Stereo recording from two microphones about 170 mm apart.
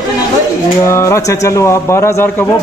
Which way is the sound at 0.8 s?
15° left (ahead or behind).